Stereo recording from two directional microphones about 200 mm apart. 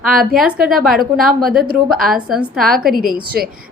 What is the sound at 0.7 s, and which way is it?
A woman's voice, centre (ahead or behind).